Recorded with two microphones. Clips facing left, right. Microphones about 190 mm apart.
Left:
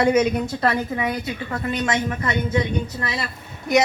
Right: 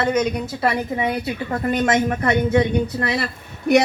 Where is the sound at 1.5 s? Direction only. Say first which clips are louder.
Right 5 dB; 45° right (ahead or behind).